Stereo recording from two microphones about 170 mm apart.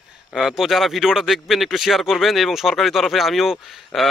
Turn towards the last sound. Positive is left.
turn(degrees=0)  # may be behind; listen again after turning